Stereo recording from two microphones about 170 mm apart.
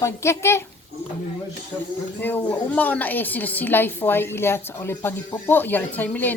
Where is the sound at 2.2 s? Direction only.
10° left (ahead or behind).